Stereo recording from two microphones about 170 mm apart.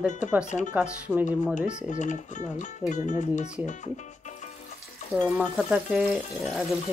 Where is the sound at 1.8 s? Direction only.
45° left (ahead or behind).